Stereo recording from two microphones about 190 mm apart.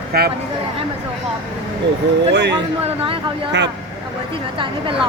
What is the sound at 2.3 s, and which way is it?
Speech, 65° right (ahead or behind).